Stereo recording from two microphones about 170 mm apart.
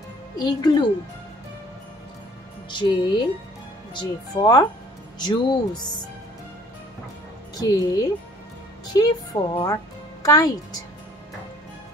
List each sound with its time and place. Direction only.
0.4 s a woman's voice: 25° left (ahead or behind)
2.7 s a woman's voice: 25° left (ahead or behind)
7.5 s a woman's voice: 20° left (ahead or behind)